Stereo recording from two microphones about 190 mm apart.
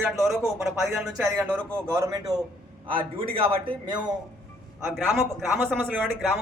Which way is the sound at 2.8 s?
30° right (ahead or behind).